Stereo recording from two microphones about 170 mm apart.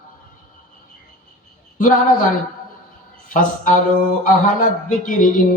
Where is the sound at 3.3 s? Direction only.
50° left (ahead or behind).